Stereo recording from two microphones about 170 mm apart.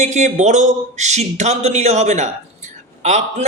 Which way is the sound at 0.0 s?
45° right (ahead or behind).